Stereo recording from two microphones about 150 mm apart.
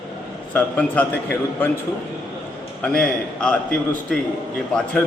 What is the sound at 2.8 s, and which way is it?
Speech, 5° left (ahead or behind).